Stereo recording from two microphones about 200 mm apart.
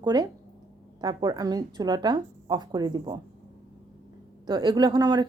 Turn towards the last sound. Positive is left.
turn(degrees=-20)  # may be behind; listen again after turning